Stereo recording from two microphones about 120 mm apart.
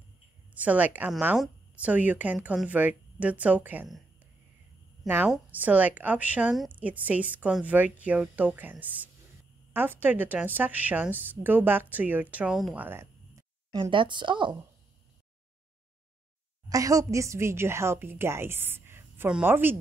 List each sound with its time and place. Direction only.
0.6 s a woman's voice: 10° right (ahead or behind)
5.0 s a woman's voice: 15° right (ahead or behind)
13.7 s a woman's voice: 40° right (ahead or behind)
16.6 s a woman's voice: 30° right (ahead or behind)